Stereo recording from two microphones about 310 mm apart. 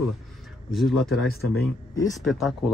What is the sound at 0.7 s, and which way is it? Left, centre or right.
Speech, centre.